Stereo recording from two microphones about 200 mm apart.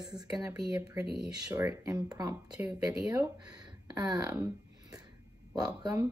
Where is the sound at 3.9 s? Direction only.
20° right (ahead or behind).